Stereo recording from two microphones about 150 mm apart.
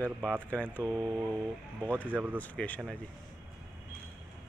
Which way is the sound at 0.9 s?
25° right (ahead or behind).